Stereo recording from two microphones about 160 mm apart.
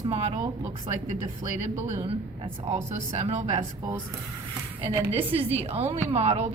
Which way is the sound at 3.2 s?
45° right (ahead or behind).